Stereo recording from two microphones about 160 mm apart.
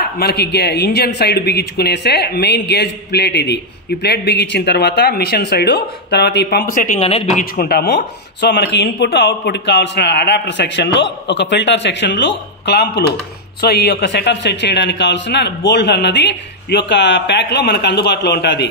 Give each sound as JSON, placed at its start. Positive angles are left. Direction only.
{"t": 0.0, "sound": "speech", "side_deg": 80}
{"t": 7.0, "sound": "speech", "side_deg": 40}